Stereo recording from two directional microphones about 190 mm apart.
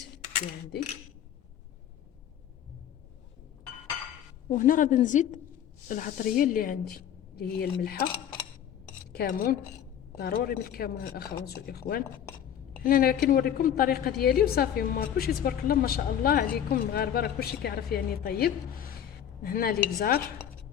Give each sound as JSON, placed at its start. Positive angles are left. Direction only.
{"t": 4.4, "sound": "a woman's voice", "side_deg": 45}
{"t": 9.1, "sound": "a woman's voice", "side_deg": 50}